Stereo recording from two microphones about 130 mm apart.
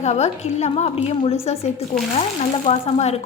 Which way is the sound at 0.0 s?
60° left (ahead or behind).